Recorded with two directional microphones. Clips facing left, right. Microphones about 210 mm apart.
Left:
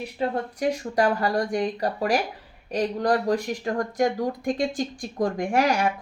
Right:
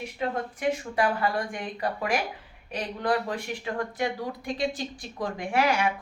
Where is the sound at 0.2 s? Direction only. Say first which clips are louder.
Left 4 dB; 40° left (ahead or behind).